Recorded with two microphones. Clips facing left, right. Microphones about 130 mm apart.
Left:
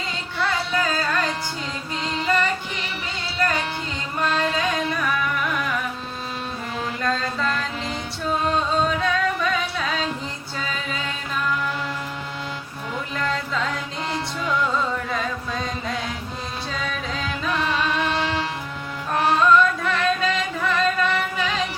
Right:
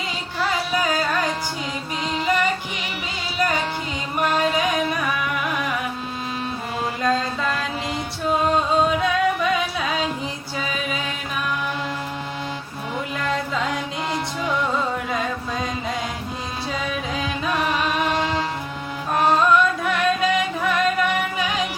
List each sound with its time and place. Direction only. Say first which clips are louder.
0.3 s music: right 1 dB; 15° right (ahead or behind)
7.0 s mantra: right 2 dB; 10° right (ahead or behind)
8.3 s music: right 3 dB; 10° right (ahead or behind)
13.1 s music: right 1 dB; 10° right (ahead or behind)
16.7 s music: right 3 dB; 15° right (ahead or behind)